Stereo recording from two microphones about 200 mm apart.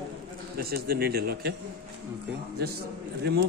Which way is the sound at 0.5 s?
50° right (ahead or behind).